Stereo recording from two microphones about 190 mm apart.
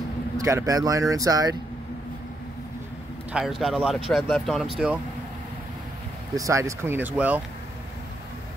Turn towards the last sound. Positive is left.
turn(degrees=-10)  # may be behind; listen again after turning